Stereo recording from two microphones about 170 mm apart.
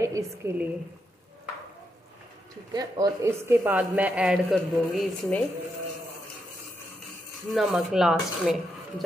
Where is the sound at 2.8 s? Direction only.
20° right (ahead or behind); by 5.4 s centre (ahead or behind).